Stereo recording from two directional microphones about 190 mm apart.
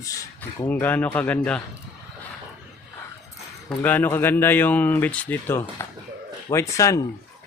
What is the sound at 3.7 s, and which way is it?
Speech, 10° left (ahead or behind).